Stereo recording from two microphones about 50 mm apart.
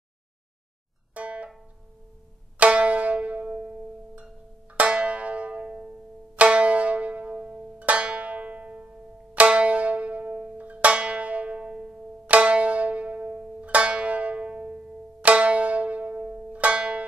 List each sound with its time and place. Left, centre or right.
1.1 s music: right
2.6 s music: right
12.3 s zither: right
15.2 s music: right